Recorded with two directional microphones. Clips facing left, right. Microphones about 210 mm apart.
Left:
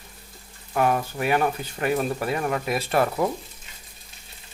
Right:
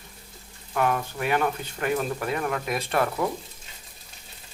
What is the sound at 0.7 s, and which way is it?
Speech, 35° left (ahead or behind).